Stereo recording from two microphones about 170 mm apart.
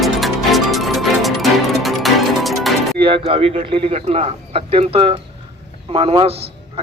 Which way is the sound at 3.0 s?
30° right (ahead or behind).